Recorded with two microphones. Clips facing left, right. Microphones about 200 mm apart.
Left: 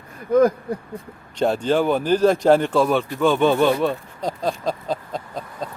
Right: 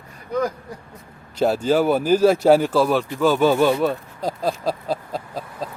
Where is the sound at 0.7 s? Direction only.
60° left (ahead or behind).